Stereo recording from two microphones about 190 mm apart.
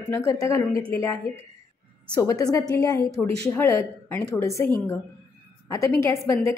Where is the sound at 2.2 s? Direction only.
20° left (ahead or behind).